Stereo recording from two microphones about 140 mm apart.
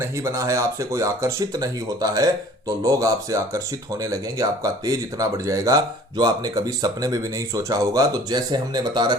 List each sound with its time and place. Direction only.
0.0 s speech: 20° right (ahead or behind)